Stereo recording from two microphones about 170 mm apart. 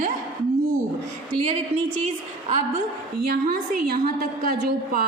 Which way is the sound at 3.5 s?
60° right (ahead or behind).